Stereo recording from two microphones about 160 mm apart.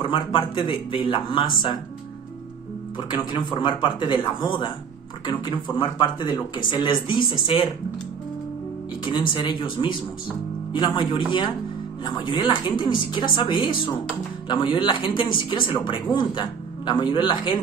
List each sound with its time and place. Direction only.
0.0 s speech: 35° left (ahead or behind)
3.0 s speech: 30° left (ahead or behind)
9.3 s speech: 30° left (ahead or behind)